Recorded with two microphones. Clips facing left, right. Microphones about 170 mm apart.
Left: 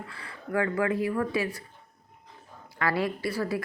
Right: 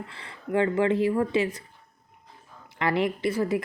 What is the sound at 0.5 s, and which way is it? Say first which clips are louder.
A woman's voice: right 4 dB; 25° right (ahead or behind).